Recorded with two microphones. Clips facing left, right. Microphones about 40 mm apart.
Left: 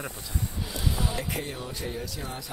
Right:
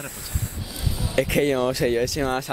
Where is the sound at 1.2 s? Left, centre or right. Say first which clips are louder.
Right 13 dB; right.